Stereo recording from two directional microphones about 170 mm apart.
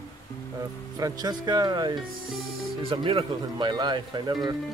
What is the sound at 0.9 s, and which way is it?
Speech, 20° right (ahead or behind).